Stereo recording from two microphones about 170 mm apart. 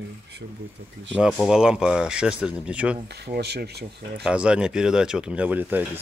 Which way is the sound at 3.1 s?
70° right (ahead or behind).